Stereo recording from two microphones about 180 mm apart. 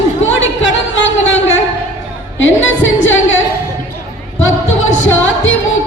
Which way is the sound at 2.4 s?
90° left.